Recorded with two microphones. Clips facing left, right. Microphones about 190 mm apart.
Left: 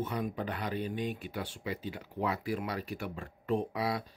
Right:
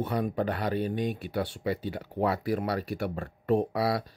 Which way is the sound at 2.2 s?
40° right (ahead or behind).